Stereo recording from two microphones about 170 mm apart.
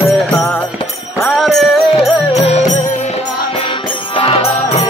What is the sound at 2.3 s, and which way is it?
Music, 40° left (ahead or behind).